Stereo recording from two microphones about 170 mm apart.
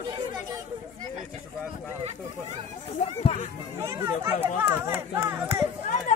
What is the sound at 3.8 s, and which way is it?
Speech, 15° right (ahead or behind).